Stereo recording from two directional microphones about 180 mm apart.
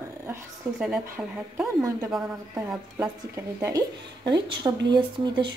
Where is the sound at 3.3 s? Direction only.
15° right (ahead or behind).